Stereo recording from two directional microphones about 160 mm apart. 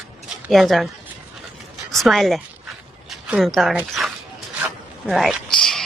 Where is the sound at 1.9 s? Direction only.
Centre (ahead or behind).